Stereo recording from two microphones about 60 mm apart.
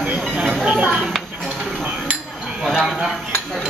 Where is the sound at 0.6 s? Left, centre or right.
Right.